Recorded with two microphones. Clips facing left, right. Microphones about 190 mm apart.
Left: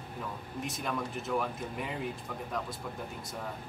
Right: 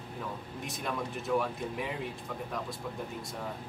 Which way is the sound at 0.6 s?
Centre (ahead or behind).